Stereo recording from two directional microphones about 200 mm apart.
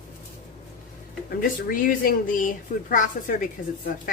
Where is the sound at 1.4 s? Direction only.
45° left (ahead or behind).